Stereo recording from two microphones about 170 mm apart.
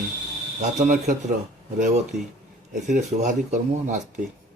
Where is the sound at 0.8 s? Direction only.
50° right (ahead or behind).